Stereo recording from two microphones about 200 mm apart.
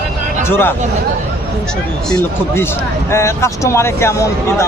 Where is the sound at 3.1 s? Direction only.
15° left (ahead or behind).